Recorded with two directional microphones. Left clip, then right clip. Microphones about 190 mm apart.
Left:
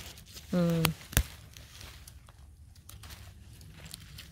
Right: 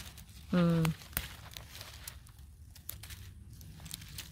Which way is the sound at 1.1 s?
45° left (ahead or behind).